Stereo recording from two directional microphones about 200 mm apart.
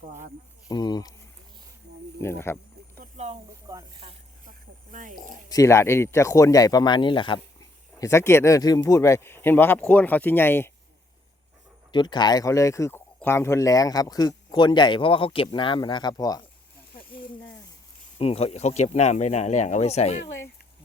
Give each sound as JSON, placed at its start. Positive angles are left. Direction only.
{"t": 0.1, "sound": "speech", "side_deg": -45}
{"t": 0.7, "sound": "speech", "side_deg": 20}
{"t": 2.2, "sound": "a sound", "side_deg": 10}
{"t": 3.0, "sound": "a sound", "side_deg": -35}
{"t": 3.7, "sound": "speech", "side_deg": -20}
{"t": 4.4, "sound": "speech", "side_deg": -40}
{"t": 5.5, "sound": "speech", "side_deg": 15}
{"t": 11.9, "sound": "speech", "side_deg": 20}
{"t": 18.2, "sound": "speech", "side_deg": 30}